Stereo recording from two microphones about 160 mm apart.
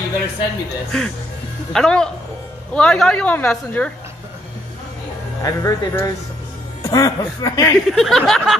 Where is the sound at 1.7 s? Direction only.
5° left (ahead or behind).